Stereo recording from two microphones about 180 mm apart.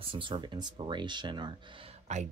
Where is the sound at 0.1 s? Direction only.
25° right (ahead or behind).